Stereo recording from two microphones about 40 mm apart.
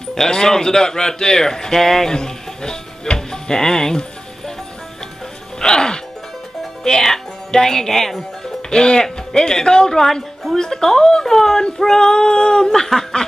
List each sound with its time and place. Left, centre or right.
0.1 s speech: centre
5.6 s music: centre
6.8 s speech: centre
8.6 s speech: left